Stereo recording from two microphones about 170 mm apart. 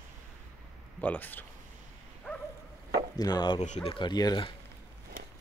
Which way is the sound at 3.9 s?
25° left (ahead or behind).